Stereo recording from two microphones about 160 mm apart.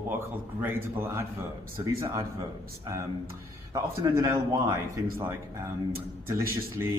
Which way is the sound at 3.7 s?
20° right (ahead or behind).